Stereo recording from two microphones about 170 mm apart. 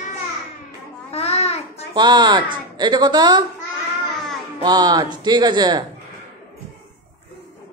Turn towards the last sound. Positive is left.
turn(degrees=-25)  # may be behind; listen again after turning